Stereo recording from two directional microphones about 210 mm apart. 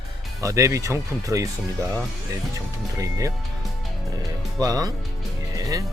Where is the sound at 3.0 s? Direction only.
15° right (ahead or behind).